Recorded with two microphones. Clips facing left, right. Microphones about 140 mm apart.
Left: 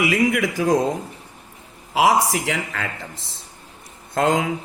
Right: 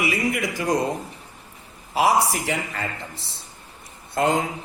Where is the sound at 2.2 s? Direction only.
90° left.